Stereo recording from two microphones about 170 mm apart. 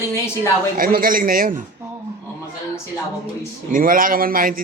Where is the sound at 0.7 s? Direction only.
55° right (ahead or behind).